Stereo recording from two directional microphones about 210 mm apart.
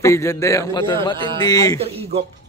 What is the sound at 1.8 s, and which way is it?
Speech, 30° right (ahead or behind).